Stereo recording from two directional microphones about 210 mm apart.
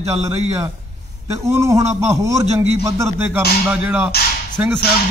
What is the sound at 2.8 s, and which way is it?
Music, 15° right (ahead or behind).